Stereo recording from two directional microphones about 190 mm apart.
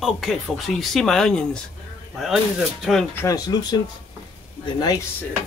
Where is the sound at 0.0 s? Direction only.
Centre (ahead or behind).